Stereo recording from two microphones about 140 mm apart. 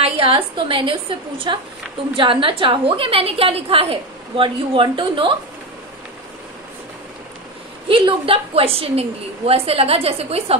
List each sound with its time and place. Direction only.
0.0 s a woman's voice: 40° right (ahead or behind)
7.9 s a woman's voice: 40° right (ahead or behind)